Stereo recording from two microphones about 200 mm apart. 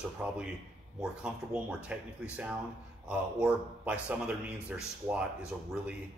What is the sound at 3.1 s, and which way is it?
A man's voice, 5° right (ahead or behind).